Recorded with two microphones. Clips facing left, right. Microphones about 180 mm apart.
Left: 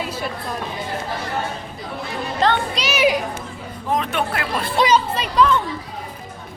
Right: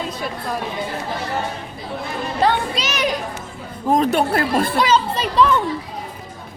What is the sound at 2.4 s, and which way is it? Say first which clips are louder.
Speech: right 1 dB; 5° right (ahead or behind).